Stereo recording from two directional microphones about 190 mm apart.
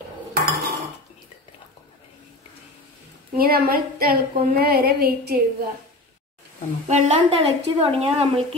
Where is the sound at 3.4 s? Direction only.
55° right (ahead or behind).